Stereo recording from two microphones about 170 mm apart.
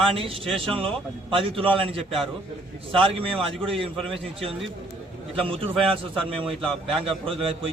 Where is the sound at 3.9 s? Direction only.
Centre (ahead or behind).